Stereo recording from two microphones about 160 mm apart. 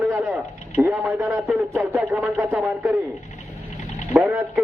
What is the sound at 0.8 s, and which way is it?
Speech, 10° right (ahead or behind).